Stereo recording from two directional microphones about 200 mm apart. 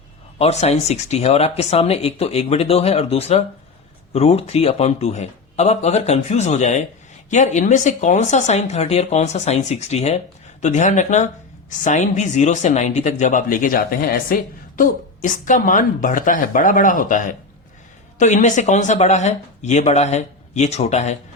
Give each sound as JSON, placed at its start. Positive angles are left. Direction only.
{"t": 0.3, "sound": "speech", "side_deg": 30}